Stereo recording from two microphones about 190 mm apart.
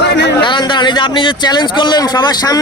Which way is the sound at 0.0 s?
65° left (ahead or behind).